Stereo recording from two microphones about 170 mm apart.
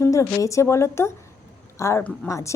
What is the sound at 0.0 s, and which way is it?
A woman's voice, 20° left (ahead or behind).